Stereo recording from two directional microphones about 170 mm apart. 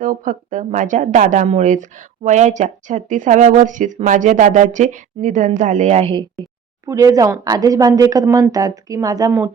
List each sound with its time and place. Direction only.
0.0 s a woman's voice: 50° right (ahead or behind); by 6.2 s 35° right (ahead or behind)
6.8 s speech: 20° right (ahead or behind)